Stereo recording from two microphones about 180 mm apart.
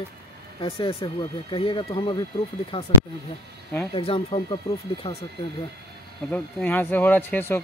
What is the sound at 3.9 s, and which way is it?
Speech, 30° left (ahead or behind).